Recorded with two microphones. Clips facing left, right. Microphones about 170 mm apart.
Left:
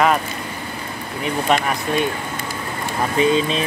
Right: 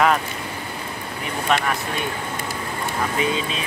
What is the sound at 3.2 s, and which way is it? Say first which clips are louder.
Speech: left 10 dB; 30° left (ahead or behind).